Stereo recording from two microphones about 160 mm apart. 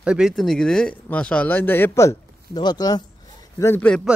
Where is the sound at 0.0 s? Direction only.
5° right (ahead or behind).